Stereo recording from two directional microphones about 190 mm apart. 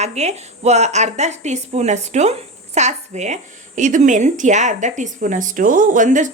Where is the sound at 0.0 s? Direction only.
35° right (ahead or behind).